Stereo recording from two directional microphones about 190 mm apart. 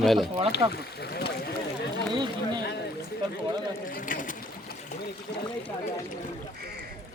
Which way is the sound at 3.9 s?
45° left (ahead or behind).